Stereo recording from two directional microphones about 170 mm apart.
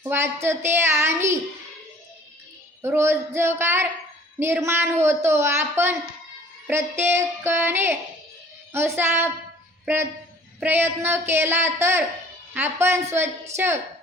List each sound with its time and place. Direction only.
0.4 s a woman's voice: 15° right (ahead or behind)
2.8 s a woman's voice: 15° right (ahead or behind)